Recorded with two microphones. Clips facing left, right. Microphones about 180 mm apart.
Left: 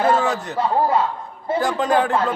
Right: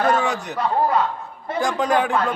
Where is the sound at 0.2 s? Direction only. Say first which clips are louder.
Left 2 dB; centre (ahead or behind).